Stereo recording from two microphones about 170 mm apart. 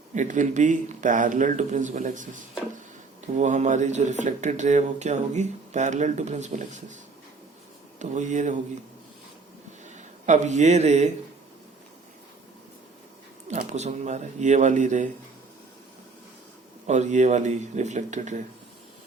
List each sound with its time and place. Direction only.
0.1 s speech: 45° right (ahead or behind)
9.8 s speech: 45° right (ahead or behind)
13.5 s speech: 45° right (ahead or behind)
16.8 s speech: 45° right (ahead or behind)